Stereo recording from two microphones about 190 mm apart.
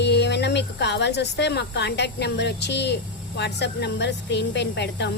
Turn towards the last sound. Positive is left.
turn(degrees=65)  # may be behind; listen again after turning